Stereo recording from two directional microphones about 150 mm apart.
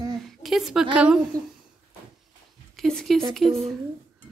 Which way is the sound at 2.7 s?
Centre (ahead or behind).